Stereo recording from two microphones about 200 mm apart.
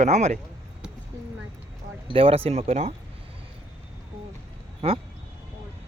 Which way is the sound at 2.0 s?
25° right (ahead or behind).